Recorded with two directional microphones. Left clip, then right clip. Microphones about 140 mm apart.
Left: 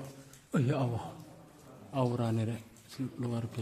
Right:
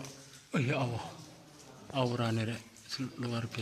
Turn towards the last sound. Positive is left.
turn(degrees=15)  # may be behind; listen again after turning